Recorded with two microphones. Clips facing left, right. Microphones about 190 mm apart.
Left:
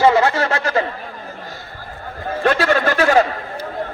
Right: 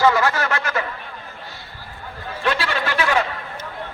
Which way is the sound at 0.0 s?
25° left (ahead or behind).